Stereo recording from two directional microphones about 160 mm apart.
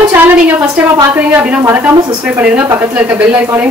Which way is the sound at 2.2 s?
10° right (ahead or behind).